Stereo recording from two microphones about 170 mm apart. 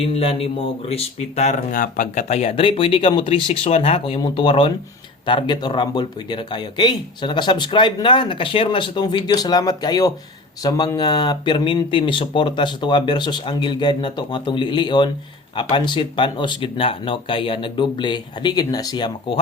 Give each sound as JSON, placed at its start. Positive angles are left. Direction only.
{"t": 0.0, "sound": "speech", "side_deg": 35}